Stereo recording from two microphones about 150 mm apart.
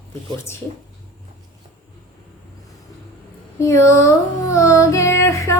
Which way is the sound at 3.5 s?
20° left (ahead or behind).